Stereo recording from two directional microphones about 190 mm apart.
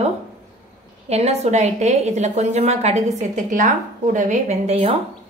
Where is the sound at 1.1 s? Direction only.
35° right (ahead or behind).